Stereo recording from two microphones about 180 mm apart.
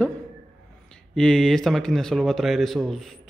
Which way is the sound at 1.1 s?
5° left (ahead or behind).